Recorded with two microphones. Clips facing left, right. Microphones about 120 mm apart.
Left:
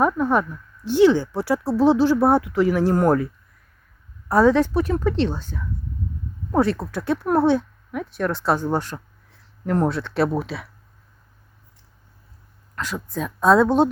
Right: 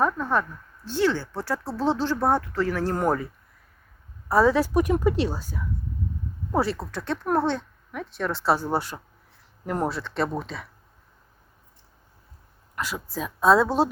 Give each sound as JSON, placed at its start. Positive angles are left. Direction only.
{"t": 0.0, "sound": "a sound", "side_deg": 15}
{"t": 0.9, "sound": "speech", "side_deg": 15}
{"t": 3.0, "sound": "speech", "side_deg": 0}
{"t": 4.3, "sound": "a woman's voice", "side_deg": 0}
{"t": 12.7, "sound": "speech", "side_deg": -10}